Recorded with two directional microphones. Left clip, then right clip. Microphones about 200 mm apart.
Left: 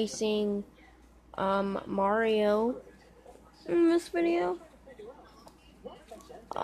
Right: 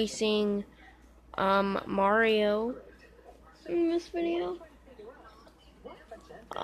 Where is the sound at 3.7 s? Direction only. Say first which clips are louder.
Left 4 dB; 25° left (ahead or behind).